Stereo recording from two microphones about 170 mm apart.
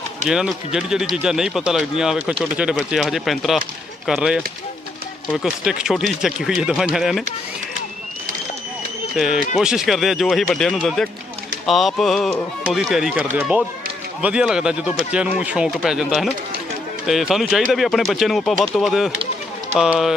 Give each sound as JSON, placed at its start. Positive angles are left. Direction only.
{"t": 0.3, "sound": "speech", "side_deg": -5}
{"t": 9.1, "sound": "speech", "side_deg": -5}